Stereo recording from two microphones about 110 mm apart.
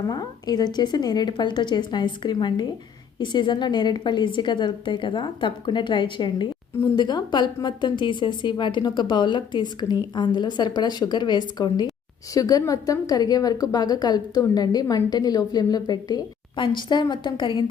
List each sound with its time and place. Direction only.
0.1 s a woman's voice: 40° left (ahead or behind)